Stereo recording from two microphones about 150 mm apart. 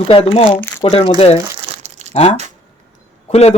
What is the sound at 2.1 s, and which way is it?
A man's voice, 45° left (ahead or behind).